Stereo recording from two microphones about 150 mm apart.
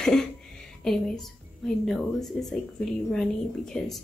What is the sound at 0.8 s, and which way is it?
A woman's voice, centre (ahead or behind).